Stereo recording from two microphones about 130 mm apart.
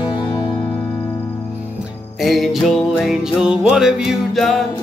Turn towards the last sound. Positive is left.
turn(degrees=0)  # may be behind; listen again after turning